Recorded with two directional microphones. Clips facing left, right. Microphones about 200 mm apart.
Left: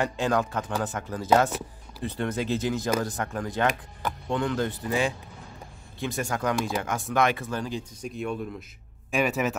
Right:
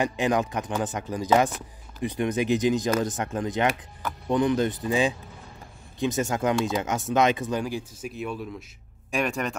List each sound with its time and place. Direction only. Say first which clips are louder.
0.0 s speech: right 1 dB; 15° right (ahead or behind); by 9.6 s 5° left (ahead or behind)